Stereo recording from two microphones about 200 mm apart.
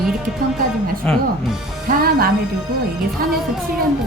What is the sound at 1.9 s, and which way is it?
Speech, 45° right (ahead or behind).